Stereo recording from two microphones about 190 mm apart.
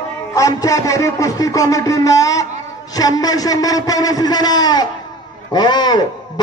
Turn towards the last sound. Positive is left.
turn(degrees=20)  # may be behind; listen again after turning